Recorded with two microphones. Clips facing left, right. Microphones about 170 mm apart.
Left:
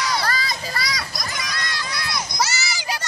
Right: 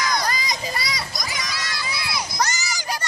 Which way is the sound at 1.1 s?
Centre (ahead or behind).